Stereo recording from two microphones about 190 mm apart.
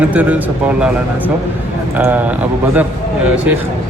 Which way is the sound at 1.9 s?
10° right (ahead or behind).